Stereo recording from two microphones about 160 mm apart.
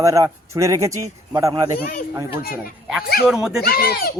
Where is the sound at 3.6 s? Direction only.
75° left (ahead or behind).